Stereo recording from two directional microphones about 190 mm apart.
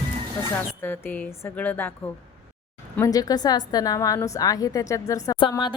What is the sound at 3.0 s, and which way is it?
A woman's voice, 20° left (ahead or behind).